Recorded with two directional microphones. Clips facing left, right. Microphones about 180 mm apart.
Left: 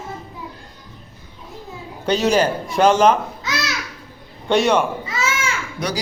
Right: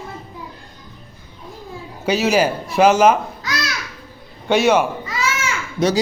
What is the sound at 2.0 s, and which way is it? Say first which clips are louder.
A man's voice: even; 5° right (ahead or behind).